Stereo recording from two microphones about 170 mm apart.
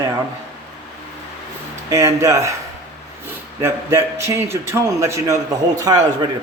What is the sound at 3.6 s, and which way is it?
A man's voice, 15° right (ahead or behind).